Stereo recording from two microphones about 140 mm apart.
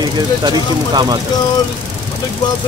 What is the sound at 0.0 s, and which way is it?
Speech, 30° right (ahead or behind).